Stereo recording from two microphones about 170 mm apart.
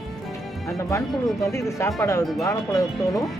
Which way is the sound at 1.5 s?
15° left (ahead or behind).